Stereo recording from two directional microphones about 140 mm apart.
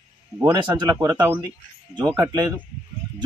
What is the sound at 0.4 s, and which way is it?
Speech, 25° right (ahead or behind).